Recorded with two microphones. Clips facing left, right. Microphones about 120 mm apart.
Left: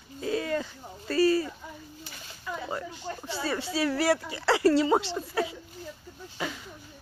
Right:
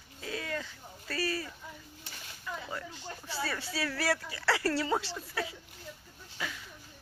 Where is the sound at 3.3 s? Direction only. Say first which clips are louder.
Left 5 dB; 25° left (ahead or behind).